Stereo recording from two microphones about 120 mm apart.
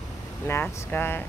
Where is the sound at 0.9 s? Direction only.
20° left (ahead or behind).